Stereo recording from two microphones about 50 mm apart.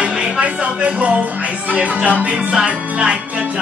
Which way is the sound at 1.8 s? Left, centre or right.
Right.